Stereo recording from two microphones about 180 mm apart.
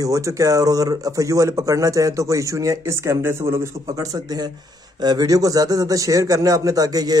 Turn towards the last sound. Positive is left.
turn(degrees=-20)  # may be behind; listen again after turning